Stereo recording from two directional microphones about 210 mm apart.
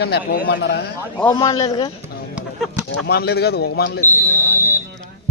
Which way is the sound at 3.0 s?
50° left (ahead or behind).